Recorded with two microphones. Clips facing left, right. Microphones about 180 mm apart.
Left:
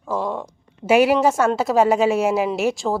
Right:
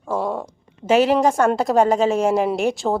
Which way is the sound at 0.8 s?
10° left (ahead or behind).